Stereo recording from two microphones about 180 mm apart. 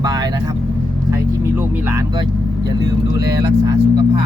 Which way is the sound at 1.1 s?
10° right (ahead or behind).